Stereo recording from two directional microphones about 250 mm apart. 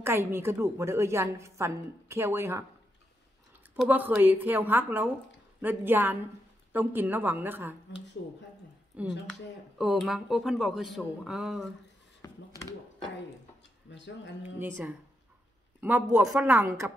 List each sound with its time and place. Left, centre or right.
0.0 s a woman's voice: centre
3.7 s a woman's voice: centre
12.2 s a sound: centre
13.8 s speech: left
14.6 s a woman's voice: centre